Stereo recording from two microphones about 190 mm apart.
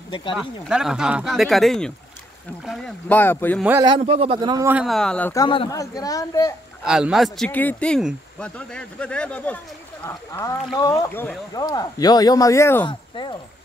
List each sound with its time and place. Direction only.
0.1 s speech: 25° left (ahead or behind)
0.4 s speech: 5° right (ahead or behind)
3.1 s speech: 10° left (ahead or behind)
4.0 s speech: 30° right (ahead or behind)
4.7 s speech: centre (ahead or behind)
5.3 s speech: 25° left (ahead or behind)
6.8 s speech: 5° right (ahead or behind); by 12.8 s 15° left (ahead or behind)
12.8 s speech: 25° left (ahead or behind)